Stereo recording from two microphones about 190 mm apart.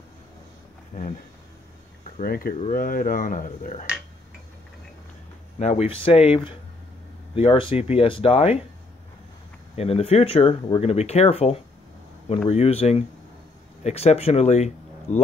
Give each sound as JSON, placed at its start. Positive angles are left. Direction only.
{"t": 0.9, "sound": "speech", "side_deg": 40}
{"t": 5.6, "sound": "speech", "side_deg": 35}
{"t": 9.8, "sound": "speech", "side_deg": 30}